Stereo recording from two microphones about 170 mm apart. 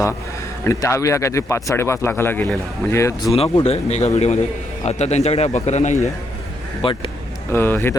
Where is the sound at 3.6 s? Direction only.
40° left (ahead or behind).